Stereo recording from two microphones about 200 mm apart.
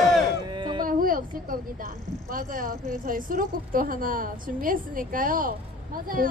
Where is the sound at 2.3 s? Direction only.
45° right (ahead or behind).